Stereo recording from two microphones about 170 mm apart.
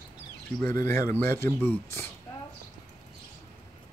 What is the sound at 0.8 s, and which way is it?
Speech, 15° left (ahead or behind).